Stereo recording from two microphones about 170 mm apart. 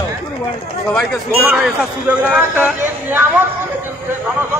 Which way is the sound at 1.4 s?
5° right (ahead or behind).